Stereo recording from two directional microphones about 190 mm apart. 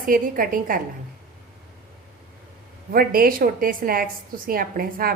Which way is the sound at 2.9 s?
50° right (ahead or behind).